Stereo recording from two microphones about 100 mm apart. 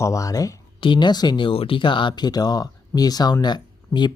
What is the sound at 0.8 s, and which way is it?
Speech, 50° left (ahead or behind).